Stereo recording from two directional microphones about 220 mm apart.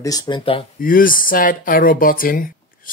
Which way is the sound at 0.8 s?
40° left (ahead or behind).